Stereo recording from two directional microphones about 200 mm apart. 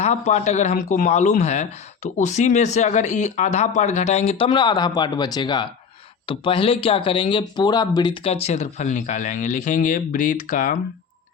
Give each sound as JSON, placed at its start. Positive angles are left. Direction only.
{"t": 0.0, "sound": "speech", "side_deg": 35}